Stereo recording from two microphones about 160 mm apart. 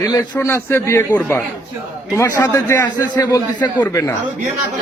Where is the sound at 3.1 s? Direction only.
25° left (ahead or behind).